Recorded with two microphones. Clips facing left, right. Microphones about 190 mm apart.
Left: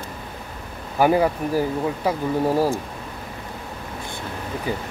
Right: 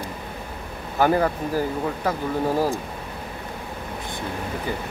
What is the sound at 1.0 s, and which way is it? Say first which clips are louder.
Speech: left 2 dB; 10° left (ahead or behind).